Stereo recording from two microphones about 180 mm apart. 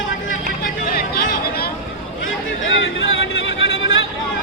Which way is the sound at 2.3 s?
90° left.